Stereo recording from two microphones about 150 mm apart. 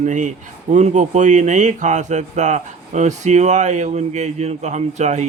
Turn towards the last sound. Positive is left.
turn(degrees=-50)  # may be behind; listen again after turning